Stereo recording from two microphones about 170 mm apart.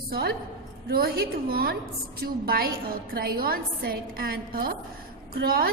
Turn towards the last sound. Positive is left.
turn(degrees=-65)  # may be behind; listen again after turning